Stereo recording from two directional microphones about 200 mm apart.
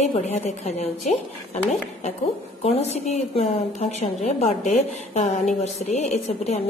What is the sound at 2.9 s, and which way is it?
A woman's voice, 35° left (ahead or behind).